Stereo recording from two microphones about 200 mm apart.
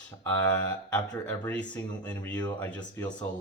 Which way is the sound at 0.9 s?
10° left (ahead or behind).